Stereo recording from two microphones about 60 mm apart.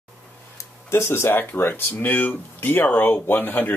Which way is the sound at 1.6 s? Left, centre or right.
Left.